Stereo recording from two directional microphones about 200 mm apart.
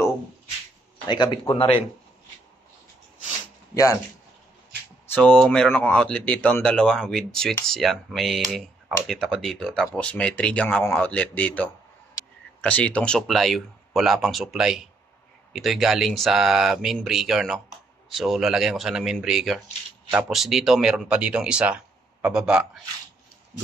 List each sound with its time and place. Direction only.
1.0 s speech: 25° left (ahead or behind)
3.7 s speech: 15° left (ahead or behind)
5.0 s speech: 5° left (ahead or behind)